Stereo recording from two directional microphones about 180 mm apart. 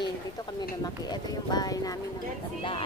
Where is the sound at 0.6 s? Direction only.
20° left (ahead or behind).